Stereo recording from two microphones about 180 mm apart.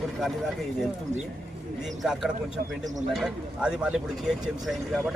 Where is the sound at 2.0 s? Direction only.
5° right (ahead or behind).